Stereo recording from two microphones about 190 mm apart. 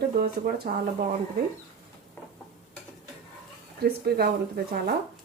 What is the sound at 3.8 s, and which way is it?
Speech, 55° right (ahead or behind).